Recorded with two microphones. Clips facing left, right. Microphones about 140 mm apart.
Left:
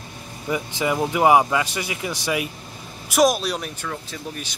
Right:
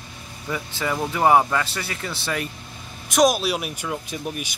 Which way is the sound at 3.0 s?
Centre (ahead or behind).